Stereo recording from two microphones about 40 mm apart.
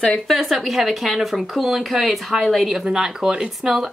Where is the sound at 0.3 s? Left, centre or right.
Centre.